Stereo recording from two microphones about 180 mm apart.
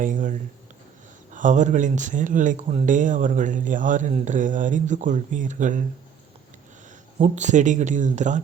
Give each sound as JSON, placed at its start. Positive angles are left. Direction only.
{"t": 0.0, "sound": "speech", "side_deg": -45}
{"t": 7.2, "sound": "speech", "side_deg": -40}